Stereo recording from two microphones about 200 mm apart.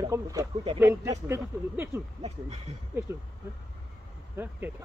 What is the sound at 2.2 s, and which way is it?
Speech, 30° right (ahead or behind).